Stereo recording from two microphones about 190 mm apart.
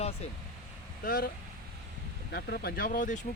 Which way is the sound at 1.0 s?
50° left (ahead or behind).